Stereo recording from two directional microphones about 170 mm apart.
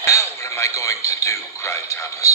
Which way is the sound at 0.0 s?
15° left (ahead or behind).